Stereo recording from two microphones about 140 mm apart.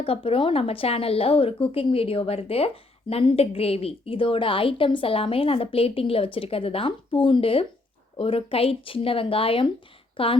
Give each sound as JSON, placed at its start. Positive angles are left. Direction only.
{"t": 0.0, "sound": "a woman's voice", "side_deg": 40}